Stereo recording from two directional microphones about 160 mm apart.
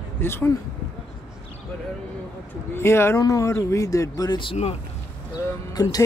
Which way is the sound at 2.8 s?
15° left (ahead or behind).